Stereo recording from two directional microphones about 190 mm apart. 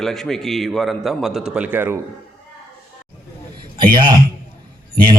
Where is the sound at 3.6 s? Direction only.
25° right (ahead or behind).